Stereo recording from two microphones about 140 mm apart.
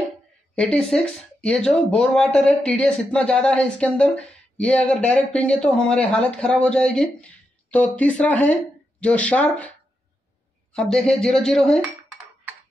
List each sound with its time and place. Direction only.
0.6 s a woman's voice: 5° left (ahead or behind)